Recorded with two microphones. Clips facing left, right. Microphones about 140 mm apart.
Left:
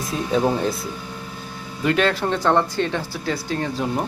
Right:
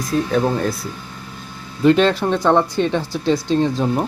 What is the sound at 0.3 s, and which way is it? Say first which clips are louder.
Speech: left 2 dB; 10° left (ahead or behind).